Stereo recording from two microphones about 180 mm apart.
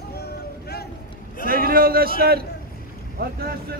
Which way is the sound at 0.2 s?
60° left (ahead or behind).